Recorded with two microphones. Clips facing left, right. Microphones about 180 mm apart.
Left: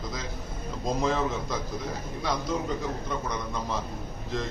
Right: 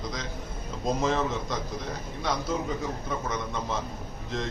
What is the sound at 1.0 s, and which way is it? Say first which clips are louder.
Speech: left 1 dB; centre (ahead or behind).